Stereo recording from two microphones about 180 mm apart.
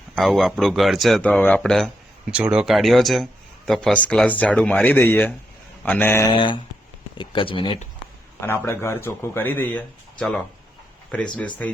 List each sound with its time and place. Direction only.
0.2 s a man's voice: centre (ahead or behind)
6.3 s speech: 25° left (ahead or behind)
8.4 s a man's voice: 15° left (ahead or behind)